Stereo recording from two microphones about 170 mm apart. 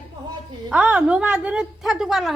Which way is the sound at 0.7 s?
5° right (ahead or behind).